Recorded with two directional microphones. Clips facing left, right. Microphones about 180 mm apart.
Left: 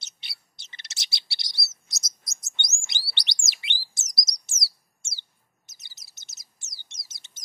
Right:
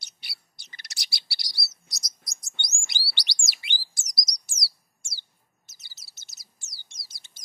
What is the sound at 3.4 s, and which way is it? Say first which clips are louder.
Bird: even; 20° left (ahead or behind).